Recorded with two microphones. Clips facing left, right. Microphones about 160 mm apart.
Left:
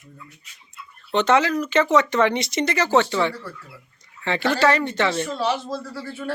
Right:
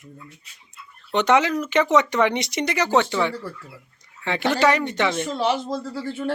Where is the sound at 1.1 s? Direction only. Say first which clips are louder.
Even; 15° right (ahead or behind).